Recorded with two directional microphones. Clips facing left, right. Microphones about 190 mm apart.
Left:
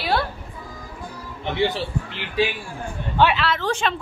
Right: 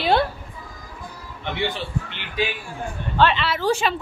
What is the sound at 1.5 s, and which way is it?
Speech, 30° left (ahead or behind).